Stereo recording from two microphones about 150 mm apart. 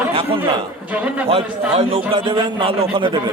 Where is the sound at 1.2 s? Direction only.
40° right (ahead or behind).